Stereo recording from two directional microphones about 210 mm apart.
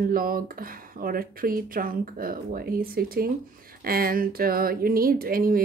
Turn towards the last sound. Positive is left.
turn(degrees=-45)  # may be behind; listen again after turning